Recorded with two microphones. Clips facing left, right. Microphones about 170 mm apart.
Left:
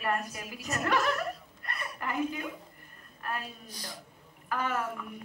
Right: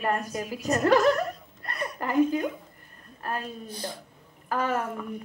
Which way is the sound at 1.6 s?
35° right (ahead or behind).